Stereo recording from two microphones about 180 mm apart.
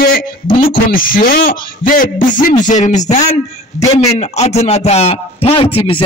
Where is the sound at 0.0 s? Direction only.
50° left (ahead or behind).